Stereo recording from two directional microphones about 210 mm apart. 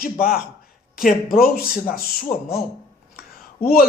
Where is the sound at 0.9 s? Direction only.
45° left (ahead or behind).